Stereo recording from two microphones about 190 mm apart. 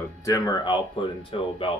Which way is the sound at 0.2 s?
20° left (ahead or behind).